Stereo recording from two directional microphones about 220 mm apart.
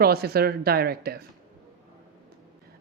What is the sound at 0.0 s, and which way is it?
Speech, 45° right (ahead or behind).